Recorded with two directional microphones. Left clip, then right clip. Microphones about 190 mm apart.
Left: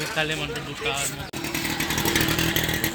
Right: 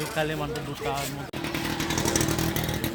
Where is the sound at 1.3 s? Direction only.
10° left (ahead or behind).